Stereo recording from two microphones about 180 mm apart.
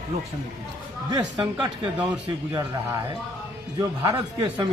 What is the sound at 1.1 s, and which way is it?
Speech, 20° right (ahead or behind).